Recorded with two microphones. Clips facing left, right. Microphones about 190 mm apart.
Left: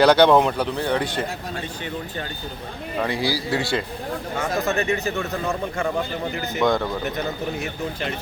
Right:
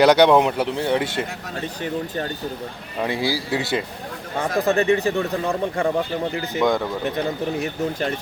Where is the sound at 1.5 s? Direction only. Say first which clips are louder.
Right 4 dB; 40° right (ahead or behind).